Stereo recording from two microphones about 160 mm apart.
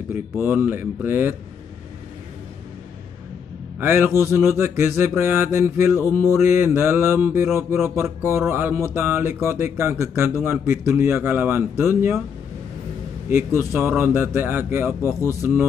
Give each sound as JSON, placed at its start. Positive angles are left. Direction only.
{"t": 0.1, "sound": "mantra", "side_deg": -15}
{"t": 3.8, "sound": "mantra", "side_deg": -15}
{"t": 13.3, "sound": "mantra", "side_deg": -15}